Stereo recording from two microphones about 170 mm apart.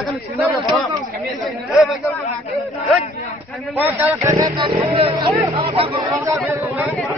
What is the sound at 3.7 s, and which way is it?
Speech, 10° right (ahead or behind).